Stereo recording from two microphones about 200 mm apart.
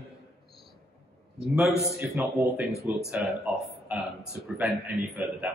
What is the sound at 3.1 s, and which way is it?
A man's voice, centre (ahead or behind).